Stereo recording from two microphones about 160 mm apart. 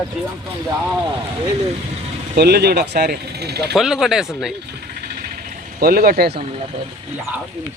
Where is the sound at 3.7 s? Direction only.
Centre (ahead or behind).